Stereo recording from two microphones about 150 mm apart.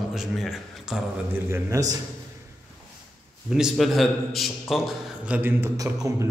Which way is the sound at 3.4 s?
5° right (ahead or behind).